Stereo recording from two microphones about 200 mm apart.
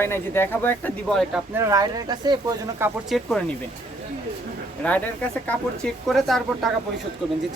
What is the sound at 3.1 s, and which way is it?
Speech, centre (ahead or behind).